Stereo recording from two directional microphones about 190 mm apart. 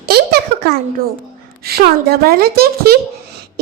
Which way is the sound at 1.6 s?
55° right (ahead or behind).